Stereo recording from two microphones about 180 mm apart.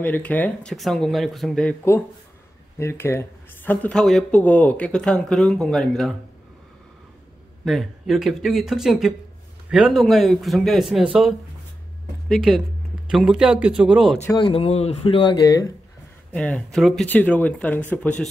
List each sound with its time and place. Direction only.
0.0 s speech: 10° left (ahead or behind)
7.6 s speech: centre (ahead or behind)
14.2 s speech: 25° left (ahead or behind)
16.3 s speech: 5° left (ahead or behind)